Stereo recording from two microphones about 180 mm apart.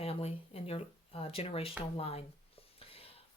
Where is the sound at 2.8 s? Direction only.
30° left (ahead or behind).